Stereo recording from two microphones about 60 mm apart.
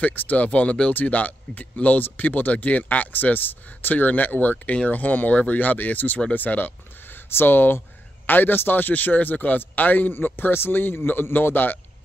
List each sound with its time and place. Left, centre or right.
0.0 s a man's voice: left